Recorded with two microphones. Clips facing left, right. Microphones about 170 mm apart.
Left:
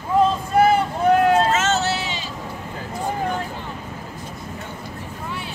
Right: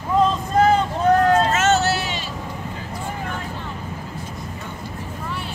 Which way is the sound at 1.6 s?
55° right (ahead or behind).